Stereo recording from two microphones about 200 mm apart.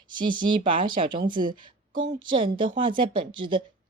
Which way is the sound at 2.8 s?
25° right (ahead or behind).